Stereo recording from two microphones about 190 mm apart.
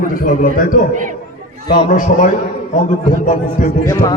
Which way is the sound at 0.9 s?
40° right (ahead or behind).